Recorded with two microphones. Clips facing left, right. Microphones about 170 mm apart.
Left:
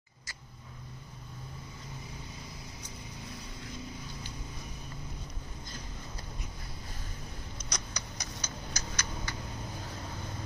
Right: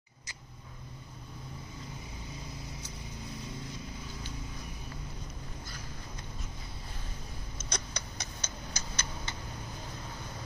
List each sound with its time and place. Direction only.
7.5 s clock: 25° right (ahead or behind)